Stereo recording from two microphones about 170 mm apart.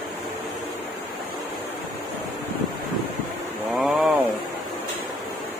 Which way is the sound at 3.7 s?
Centre (ahead or behind).